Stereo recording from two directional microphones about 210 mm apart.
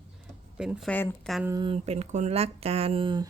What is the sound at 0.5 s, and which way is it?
Speech, 5° right (ahead or behind).